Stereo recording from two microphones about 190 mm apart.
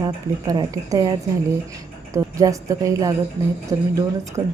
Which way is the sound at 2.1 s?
15° right (ahead or behind).